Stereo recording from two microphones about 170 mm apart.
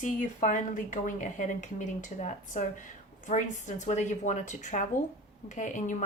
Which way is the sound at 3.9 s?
45° left (ahead or behind).